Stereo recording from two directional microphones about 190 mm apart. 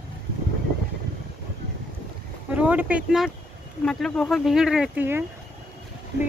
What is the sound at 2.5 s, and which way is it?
Speech, 10° right (ahead or behind).